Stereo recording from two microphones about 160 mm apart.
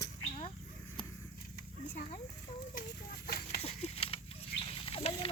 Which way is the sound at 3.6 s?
40° left (ahead or behind).